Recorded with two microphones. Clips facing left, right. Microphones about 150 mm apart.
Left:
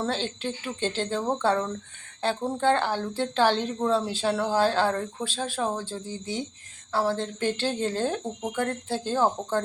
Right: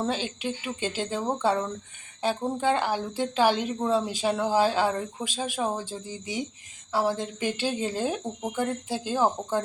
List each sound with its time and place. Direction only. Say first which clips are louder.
0.0 s speech: even; 10° right (ahead or behind)